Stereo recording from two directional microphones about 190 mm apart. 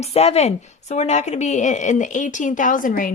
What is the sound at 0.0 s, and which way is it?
A woman's voice, 35° left (ahead or behind).